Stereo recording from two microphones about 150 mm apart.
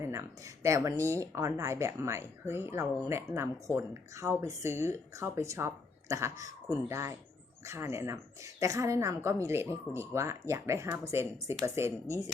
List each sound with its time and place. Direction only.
0.0 s speech: 20° right (ahead or behind)